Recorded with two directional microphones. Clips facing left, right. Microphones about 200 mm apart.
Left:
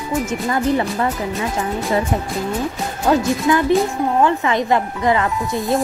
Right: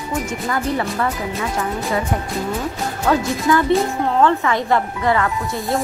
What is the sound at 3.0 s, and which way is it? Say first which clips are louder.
Speech: left 2 dB; 20° left (ahead or behind).